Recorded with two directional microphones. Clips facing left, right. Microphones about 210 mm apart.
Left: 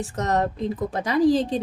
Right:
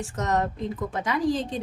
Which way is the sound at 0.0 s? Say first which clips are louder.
Left 2 dB; 35° left (ahead or behind).